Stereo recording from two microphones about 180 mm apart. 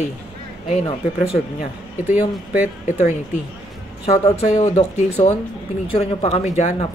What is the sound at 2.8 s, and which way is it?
Speech, 40° left (ahead or behind).